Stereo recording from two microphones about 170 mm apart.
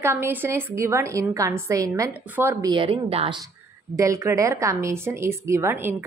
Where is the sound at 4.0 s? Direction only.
20° right (ahead or behind).